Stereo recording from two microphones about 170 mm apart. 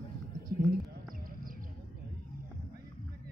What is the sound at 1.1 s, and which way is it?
Basketball bounce, 55° right (ahead or behind).